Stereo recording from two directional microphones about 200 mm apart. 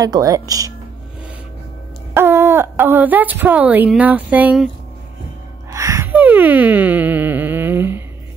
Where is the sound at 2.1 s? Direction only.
10° right (ahead or behind).